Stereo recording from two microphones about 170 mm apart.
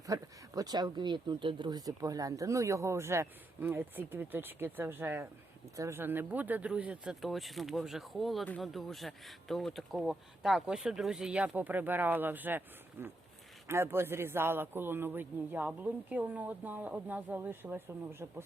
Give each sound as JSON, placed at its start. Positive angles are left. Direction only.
{"t": 0.1, "sound": "speech", "side_deg": -20}